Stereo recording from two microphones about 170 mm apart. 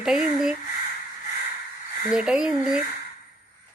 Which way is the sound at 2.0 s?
5° right (ahead or behind).